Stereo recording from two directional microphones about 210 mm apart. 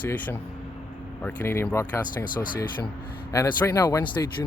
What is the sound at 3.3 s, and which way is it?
Speech, 15° left (ahead or behind).